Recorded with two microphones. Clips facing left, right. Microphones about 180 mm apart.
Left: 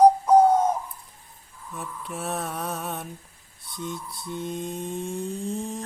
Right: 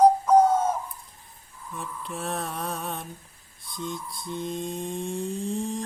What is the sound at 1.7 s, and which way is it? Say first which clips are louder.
Mantra: even; 5° left (ahead or behind).